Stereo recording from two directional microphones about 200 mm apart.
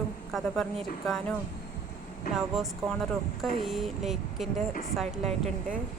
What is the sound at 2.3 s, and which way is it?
Speech, centre (ahead or behind).